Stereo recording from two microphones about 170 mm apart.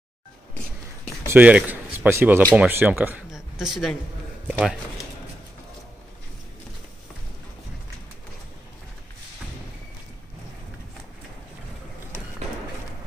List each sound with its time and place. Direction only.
1.2 s speech: 10° right (ahead or behind)